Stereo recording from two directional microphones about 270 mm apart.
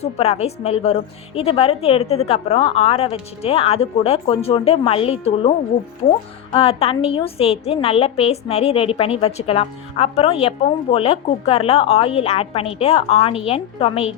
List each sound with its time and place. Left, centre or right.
0.0 s a woman's voice: left